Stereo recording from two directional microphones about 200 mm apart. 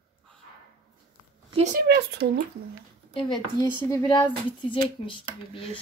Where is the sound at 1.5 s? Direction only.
30° right (ahead or behind).